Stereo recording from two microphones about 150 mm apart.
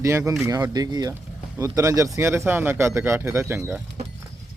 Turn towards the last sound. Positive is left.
turn(degrees=-15)  # may be behind; listen again after turning